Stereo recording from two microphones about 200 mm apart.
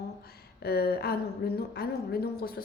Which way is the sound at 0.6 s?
50° left (ahead or behind).